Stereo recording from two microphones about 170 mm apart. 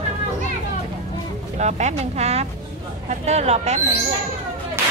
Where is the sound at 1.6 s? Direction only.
40° right (ahead or behind).